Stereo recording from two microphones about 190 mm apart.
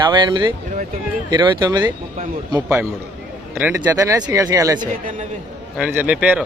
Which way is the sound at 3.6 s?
10° right (ahead or behind).